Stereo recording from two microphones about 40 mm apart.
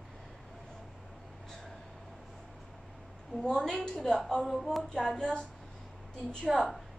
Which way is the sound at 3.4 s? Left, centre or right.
Centre.